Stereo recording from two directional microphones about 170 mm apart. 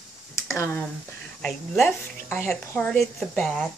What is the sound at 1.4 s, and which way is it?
Speech, 5° left (ahead or behind).